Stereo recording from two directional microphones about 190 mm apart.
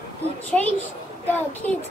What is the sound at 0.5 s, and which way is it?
Speech, 5° left (ahead or behind).